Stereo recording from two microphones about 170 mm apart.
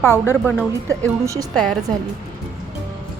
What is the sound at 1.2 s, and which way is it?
Speech, 20° right (ahead or behind).